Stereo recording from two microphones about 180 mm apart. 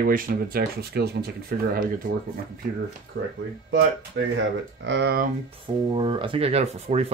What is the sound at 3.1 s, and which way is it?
Speech, 60° right (ahead or behind).